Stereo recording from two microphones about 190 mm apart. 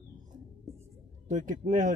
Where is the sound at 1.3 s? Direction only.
40° right (ahead or behind).